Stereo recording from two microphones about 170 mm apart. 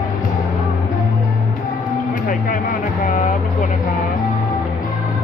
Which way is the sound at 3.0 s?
50° left (ahead or behind).